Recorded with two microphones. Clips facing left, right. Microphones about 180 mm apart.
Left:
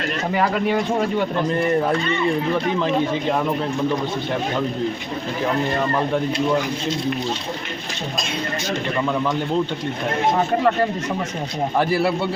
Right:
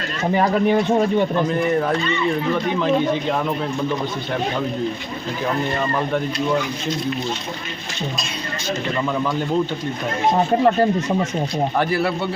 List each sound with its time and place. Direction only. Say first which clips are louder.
0.3 s speech: right 3 dB; 20° right (ahead or behind)
10.3 s speech: right 5 dB; 25° right (ahead or behind)
11.8 s speech: left 4 dB; 5° left (ahead or behind)